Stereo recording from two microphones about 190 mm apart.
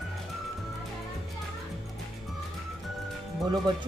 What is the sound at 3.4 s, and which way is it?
Speech, 20° right (ahead or behind).